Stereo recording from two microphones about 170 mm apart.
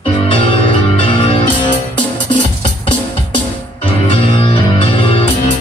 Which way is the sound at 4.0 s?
30° left (ahead or behind).